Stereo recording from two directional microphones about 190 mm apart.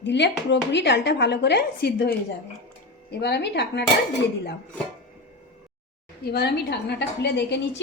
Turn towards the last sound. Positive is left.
turn(degrees=60)  # may be behind; listen again after turning